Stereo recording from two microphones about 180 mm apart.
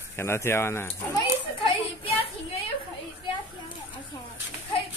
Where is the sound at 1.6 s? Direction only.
30° left (ahead or behind).